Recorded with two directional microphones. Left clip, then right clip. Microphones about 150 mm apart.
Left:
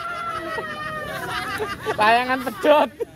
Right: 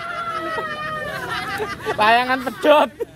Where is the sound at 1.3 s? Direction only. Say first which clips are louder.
Even; centre (ahead or behind).